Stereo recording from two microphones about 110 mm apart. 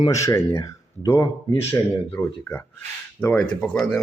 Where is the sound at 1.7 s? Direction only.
20° left (ahead or behind).